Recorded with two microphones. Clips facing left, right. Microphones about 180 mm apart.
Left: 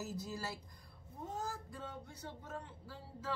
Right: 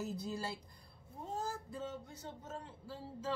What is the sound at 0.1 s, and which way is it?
Speech, 30° right (ahead or behind).